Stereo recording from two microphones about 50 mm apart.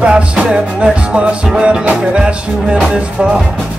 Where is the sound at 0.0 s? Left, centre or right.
Centre.